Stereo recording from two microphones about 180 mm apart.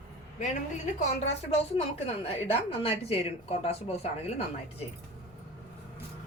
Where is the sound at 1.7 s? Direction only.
35° left (ahead or behind).